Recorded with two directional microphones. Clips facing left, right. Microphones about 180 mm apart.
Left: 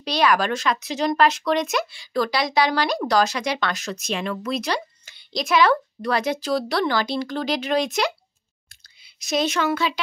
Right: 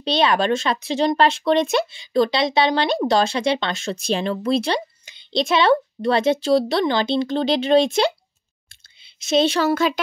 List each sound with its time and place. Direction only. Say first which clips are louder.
0.0 s speech: right 2 dB; 25° right (ahead or behind)
8.6 s clicking: even; 25° right (ahead or behind)